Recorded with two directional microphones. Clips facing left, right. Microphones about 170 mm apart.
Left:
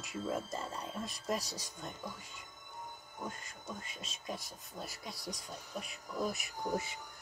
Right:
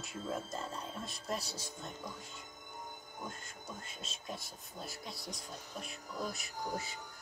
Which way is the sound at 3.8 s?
5° left (ahead or behind).